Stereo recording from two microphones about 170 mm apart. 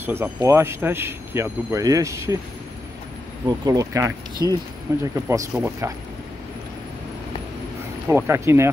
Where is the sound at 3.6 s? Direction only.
20° right (ahead or behind).